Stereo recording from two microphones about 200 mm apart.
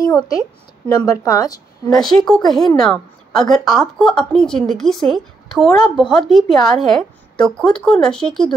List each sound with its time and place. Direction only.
0.9 s speech: 15° left (ahead or behind)
2.0 s a woman's voice: centre (ahead or behind)